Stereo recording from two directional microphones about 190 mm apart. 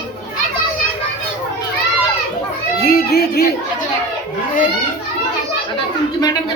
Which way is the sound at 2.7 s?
55° left (ahead or behind).